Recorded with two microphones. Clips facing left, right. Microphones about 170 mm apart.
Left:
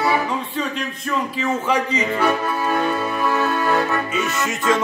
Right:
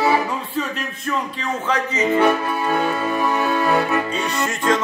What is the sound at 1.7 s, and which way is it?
Music, 10° left (ahead or behind).